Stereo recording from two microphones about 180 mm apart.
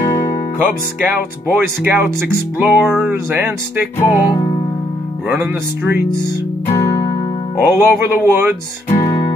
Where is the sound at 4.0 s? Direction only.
20° left (ahead or behind).